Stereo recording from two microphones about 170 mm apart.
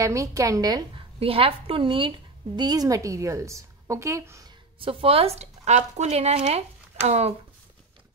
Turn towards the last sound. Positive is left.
turn(degrees=-40)  # may be behind; listen again after turning